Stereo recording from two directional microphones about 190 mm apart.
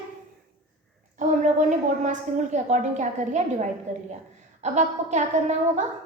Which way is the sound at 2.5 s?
40° right (ahead or behind).